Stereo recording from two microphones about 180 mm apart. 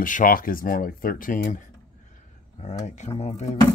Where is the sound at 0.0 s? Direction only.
50° left (ahead or behind).